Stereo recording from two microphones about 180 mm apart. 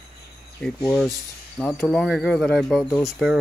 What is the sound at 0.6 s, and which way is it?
Speech, centre (ahead or behind).